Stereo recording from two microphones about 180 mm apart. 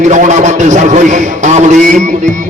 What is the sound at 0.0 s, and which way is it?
A man's voice, 40° right (ahead or behind).